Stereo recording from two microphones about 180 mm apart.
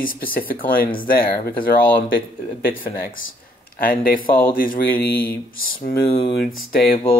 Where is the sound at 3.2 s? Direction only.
55° left (ahead or behind).